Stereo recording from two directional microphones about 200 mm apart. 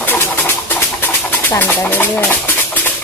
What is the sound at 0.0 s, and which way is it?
Bird, 10° left (ahead or behind).